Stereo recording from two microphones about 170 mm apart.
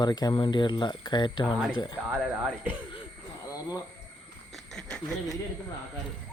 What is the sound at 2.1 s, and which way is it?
Speech, 10° right (ahead or behind).